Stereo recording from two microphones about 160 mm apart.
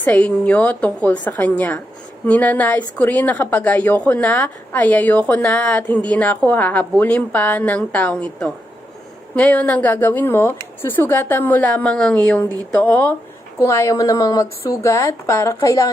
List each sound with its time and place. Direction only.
0.0 s a woman's voice: 10° left (ahead or behind)